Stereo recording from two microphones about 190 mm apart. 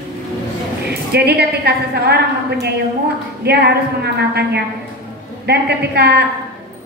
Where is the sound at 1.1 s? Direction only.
60° right (ahead or behind).